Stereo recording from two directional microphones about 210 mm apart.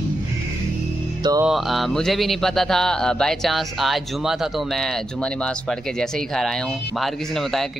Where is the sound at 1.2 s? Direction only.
15° right (ahead or behind).